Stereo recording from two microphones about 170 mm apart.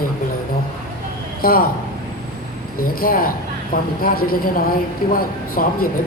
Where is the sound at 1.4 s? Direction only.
60° left (ahead or behind).